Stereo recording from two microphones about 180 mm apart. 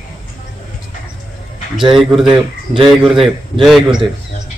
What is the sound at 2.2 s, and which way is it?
Speech, 25° right (ahead or behind).